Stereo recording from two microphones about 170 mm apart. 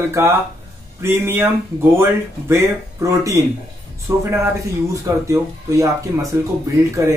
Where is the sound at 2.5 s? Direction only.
15° right (ahead or behind).